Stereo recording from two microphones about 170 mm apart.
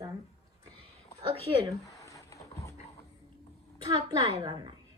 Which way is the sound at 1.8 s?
20° left (ahead or behind).